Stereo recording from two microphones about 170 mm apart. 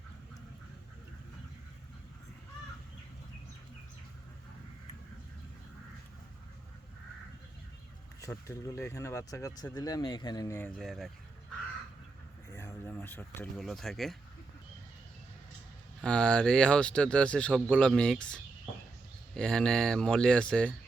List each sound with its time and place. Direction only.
8.2 s speech: 15° left (ahead or behind)
10.8 s speech: centre (ahead or behind)
12.5 s a sound: 15° left (ahead or behind)
13.6 s speech: centre (ahead or behind)
16.0 s speech: 5° left (ahead or behind)